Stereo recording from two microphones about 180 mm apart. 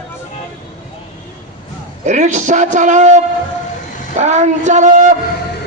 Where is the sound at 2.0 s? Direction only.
40° right (ahead or behind).